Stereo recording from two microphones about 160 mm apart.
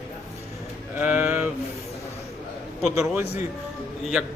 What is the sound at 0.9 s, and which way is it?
Speech, 10° right (ahead or behind).